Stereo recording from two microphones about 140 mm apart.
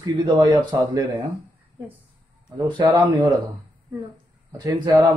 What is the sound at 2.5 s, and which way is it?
Speech, 35° right (ahead or behind).